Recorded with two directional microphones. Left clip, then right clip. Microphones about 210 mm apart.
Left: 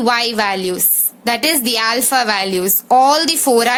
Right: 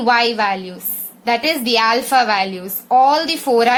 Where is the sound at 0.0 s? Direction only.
40° left (ahead or behind).